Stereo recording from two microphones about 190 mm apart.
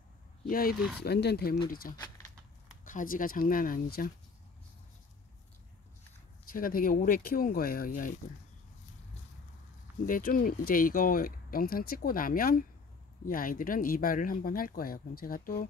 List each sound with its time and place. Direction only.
0.5 s speech: 50° left (ahead or behind)
2.0 s a sound: 20° left (ahead or behind)
2.8 s speech: 45° left (ahead or behind)
6.4 s speech: 50° left (ahead or behind)
10.0 s speech: 45° left (ahead or behind)